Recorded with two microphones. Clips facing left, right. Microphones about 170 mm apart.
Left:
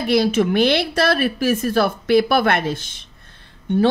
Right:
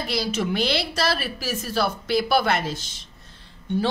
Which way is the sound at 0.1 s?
55° left (ahead or behind).